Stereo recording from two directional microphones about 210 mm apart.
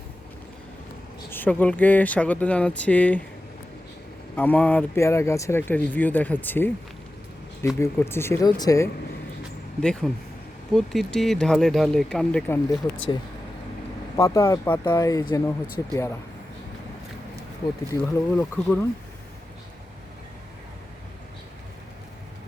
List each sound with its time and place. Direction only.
1.3 s speech: 10° left (ahead or behind)
4.4 s speech: 10° left (ahead or behind)
7.8 s speech: 10° left (ahead or behind)
9.8 s speech: 5° left (ahead or behind)
14.2 s speech: 15° left (ahead or behind)
15.6 s speech: 10° right (ahead or behind)
17.9 s speech: 10° left (ahead or behind)